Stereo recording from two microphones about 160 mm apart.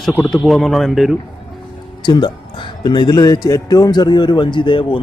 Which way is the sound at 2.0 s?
30° left (ahead or behind).